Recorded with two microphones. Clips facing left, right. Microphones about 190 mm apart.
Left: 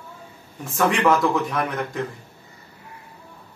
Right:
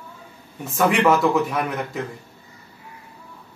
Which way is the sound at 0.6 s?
5° right (ahead or behind).